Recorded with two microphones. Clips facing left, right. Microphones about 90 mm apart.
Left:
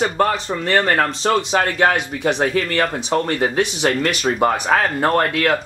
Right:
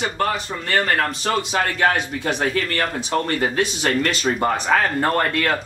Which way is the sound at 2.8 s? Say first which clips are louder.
Left 3 dB; centre (ahead or behind).